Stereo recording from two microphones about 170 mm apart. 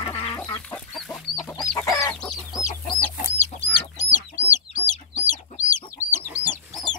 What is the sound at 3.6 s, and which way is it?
Chicken, 45° left (ahead or behind).